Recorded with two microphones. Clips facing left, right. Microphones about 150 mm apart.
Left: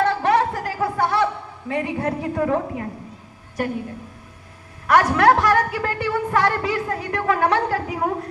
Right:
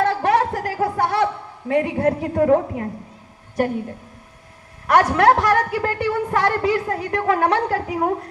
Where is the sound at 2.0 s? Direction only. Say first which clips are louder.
Right 4 dB; 40° right (ahead or behind).